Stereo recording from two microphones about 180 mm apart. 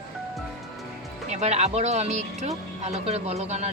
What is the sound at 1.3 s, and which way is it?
Speech, 40° right (ahead or behind).